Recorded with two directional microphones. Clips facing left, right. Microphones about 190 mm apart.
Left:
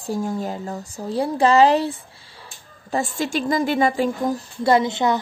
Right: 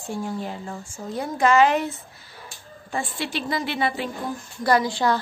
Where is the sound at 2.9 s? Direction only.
45° left (ahead or behind).